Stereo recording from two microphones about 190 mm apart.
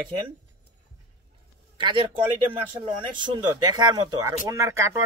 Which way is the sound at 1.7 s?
25° right (ahead or behind).